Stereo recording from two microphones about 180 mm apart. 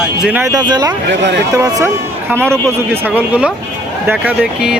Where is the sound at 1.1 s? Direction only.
75° right (ahead or behind).